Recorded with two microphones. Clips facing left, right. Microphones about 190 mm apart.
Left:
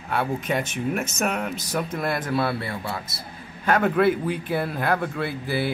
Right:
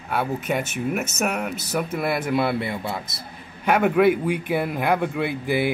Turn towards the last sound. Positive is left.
turn(degrees=-15)  # may be behind; listen again after turning